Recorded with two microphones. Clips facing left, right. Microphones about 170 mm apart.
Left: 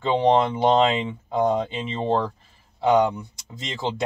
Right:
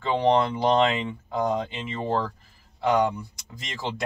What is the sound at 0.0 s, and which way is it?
Speech, 20° left (ahead or behind).